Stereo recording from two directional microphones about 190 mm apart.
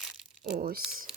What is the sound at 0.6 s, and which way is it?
Speech, 45° right (ahead or behind).